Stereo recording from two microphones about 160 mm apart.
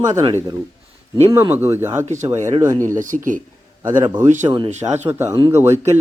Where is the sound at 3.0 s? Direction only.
55° right (ahead or behind).